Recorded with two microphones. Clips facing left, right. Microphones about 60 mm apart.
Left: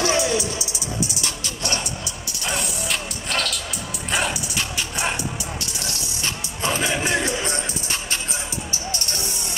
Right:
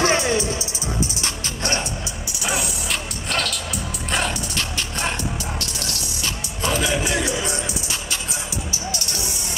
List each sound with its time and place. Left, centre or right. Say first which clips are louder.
0.0 s music: right 2 dB; right
2.4 s music: right 1 dB; centre
4.3 s music: right 1 dB; centre
6.2 s music: even; left
8.9 s vehicle: right 1 dB; left